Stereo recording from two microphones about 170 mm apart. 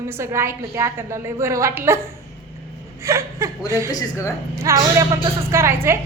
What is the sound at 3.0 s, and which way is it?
Speech, 15° right (ahead or behind).